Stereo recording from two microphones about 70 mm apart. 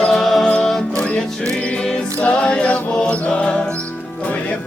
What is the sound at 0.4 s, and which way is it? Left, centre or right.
Music, centre.